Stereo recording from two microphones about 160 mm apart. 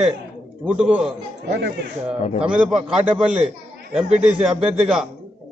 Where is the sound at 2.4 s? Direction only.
5° right (ahead or behind).